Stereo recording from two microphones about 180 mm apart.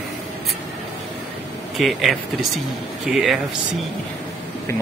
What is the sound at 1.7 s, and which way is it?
Speech, centre (ahead or behind).